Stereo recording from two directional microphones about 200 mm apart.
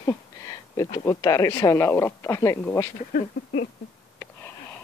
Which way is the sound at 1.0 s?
15° left (ahead or behind).